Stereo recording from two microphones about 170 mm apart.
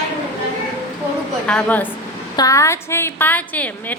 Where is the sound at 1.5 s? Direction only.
10° left (ahead or behind).